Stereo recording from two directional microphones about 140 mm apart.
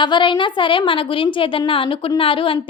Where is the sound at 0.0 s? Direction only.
35° left (ahead or behind).